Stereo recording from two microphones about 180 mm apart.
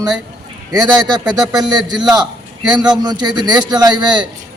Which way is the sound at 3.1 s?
25° right (ahead or behind).